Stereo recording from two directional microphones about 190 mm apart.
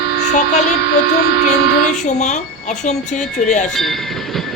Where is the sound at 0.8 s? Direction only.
65° left (ahead or behind).